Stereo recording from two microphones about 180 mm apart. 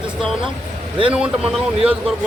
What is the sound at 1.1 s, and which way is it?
Speech, 5° right (ahead or behind).